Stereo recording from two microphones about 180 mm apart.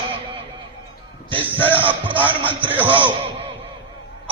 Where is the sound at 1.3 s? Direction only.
10° left (ahead or behind).